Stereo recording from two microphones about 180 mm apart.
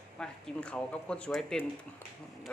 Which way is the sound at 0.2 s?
5° left (ahead or behind).